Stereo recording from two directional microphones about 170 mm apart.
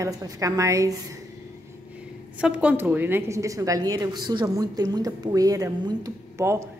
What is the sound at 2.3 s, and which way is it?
A woman's voice, 5° right (ahead or behind).